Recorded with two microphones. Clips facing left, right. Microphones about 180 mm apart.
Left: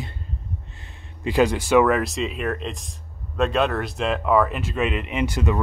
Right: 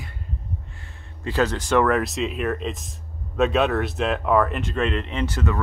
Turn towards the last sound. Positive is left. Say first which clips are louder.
# left 2 dB
turn(degrees=15)  # may be behind; listen again after turning